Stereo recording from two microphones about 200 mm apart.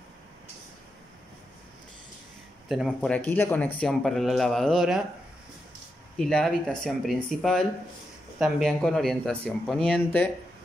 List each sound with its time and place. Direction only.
2.7 s speech: centre (ahead or behind)
6.1 s speech: 5° left (ahead or behind)